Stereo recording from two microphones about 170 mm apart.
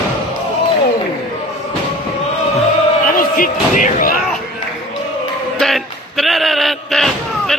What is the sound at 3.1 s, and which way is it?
Slam, 55° left (ahead or behind).